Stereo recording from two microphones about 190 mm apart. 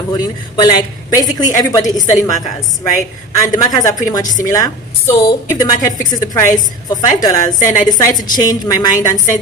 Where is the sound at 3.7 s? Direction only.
20° left (ahead or behind).